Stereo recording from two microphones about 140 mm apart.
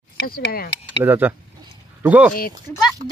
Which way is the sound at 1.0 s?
15° right (ahead or behind).